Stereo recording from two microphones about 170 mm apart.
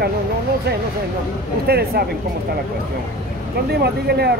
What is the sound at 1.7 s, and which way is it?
Speech, 70° right (ahead or behind).